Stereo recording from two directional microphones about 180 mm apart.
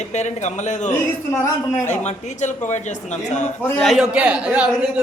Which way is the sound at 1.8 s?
40° left (ahead or behind).